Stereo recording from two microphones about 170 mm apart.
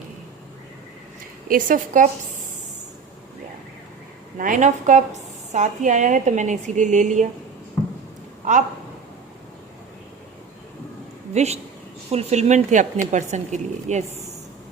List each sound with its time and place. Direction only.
1.5 s a woman's voice: 50° right (ahead or behind)
4.4 s a woman's voice: 50° right (ahead or behind)
8.5 s a woman's voice: 45° right (ahead or behind)
11.3 s a woman's voice: 40° right (ahead or behind)